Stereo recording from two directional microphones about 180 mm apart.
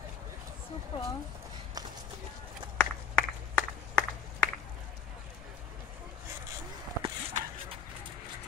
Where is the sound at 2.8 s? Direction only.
10° left (ahead or behind).